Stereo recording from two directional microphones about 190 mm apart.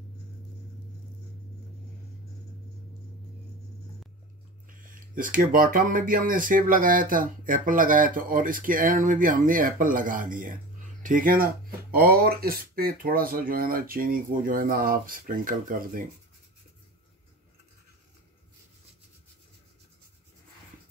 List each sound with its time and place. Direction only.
4.6 s speech: 45° right (ahead or behind)